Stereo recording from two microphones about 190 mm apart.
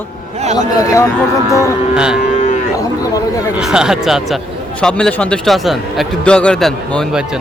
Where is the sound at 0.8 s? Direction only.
15° left (ahead or behind).